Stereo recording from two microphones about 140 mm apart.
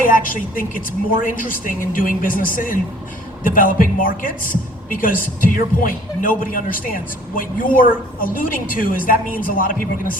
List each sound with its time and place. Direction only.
0.0 s a woman's voice: 80° left